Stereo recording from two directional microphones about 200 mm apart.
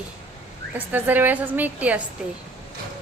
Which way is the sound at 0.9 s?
10° right (ahead or behind).